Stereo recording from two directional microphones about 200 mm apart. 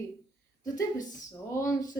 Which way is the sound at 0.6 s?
20° left (ahead or behind).